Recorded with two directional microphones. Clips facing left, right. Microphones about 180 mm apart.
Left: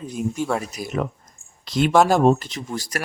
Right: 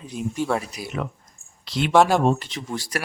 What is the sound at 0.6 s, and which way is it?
Speech, 45° left (ahead or behind).